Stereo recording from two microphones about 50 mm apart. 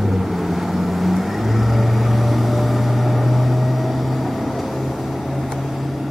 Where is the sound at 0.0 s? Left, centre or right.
Centre.